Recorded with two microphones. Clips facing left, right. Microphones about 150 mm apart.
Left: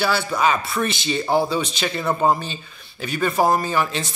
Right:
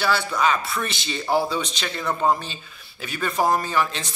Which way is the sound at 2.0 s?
25° left (ahead or behind).